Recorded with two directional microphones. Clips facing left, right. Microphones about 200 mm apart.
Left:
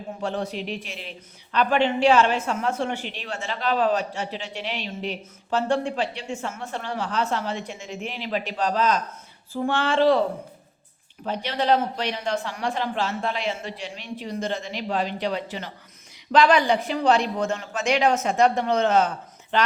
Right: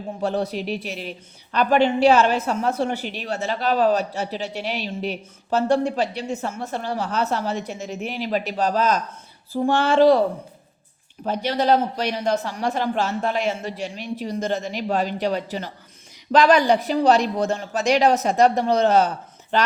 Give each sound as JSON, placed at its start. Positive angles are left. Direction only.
{"t": 0.2, "sound": "a woman's voice", "side_deg": -40}
{"t": 11.3, "sound": "a woman's voice", "side_deg": -40}